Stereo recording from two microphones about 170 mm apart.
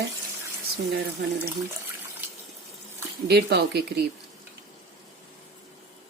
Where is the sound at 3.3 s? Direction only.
75° right (ahead or behind).